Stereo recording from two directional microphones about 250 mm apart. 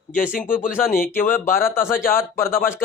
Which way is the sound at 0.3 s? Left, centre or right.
Left.